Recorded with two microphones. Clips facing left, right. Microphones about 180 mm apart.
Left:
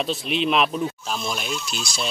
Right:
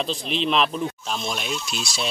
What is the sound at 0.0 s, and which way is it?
Speech, 5° left (ahead or behind).